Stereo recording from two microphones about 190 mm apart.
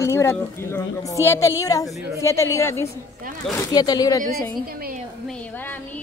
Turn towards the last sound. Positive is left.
turn(degrees=10)  # may be behind; listen again after turning